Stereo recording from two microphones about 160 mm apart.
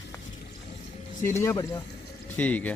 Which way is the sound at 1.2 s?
15° left (ahead or behind).